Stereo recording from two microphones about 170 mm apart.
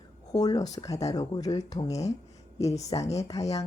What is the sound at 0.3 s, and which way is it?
Speech, 20° left (ahead or behind).